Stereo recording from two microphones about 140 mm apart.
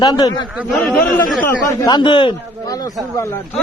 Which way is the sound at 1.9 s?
35° left (ahead or behind).